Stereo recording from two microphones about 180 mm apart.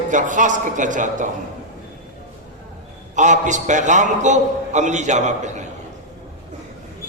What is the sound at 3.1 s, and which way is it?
Speech, 45° right (ahead or behind).